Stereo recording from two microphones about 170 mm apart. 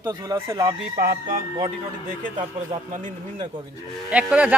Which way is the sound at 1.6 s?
50° right (ahead or behind).